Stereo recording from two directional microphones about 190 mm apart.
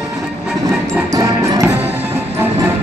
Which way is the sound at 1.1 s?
15° right (ahead or behind).